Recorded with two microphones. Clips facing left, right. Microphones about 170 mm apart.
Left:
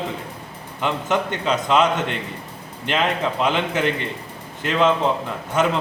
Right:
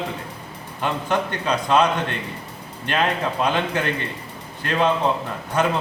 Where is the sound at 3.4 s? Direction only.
20° left (ahead or behind).